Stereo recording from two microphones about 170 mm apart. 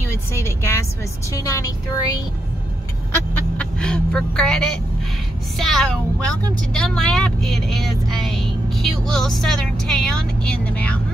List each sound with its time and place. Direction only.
0.3 s vehicle: 15° left (ahead or behind)
1.3 s speech: 20° left (ahead or behind)
3.5 s speech: 5° left (ahead or behind)